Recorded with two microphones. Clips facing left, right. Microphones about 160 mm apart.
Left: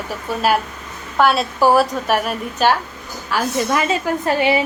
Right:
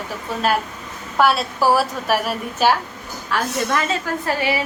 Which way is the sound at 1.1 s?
Centre (ahead or behind).